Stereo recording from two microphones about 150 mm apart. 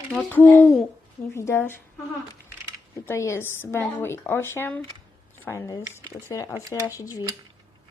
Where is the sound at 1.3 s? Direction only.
15° left (ahead or behind).